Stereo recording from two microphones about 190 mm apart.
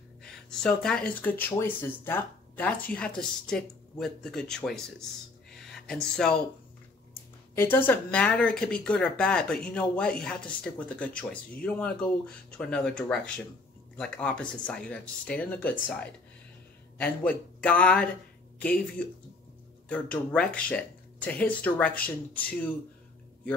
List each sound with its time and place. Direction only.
0.2 s speech: 5° left (ahead or behind)
5.5 s a sound: centre (ahead or behind)
7.5 s speech: 10° left (ahead or behind)